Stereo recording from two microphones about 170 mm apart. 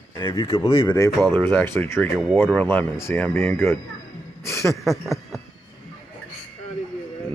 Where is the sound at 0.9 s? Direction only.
15° left (ahead or behind).